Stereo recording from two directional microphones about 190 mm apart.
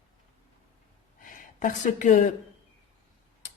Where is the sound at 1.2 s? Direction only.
45° left (ahead or behind).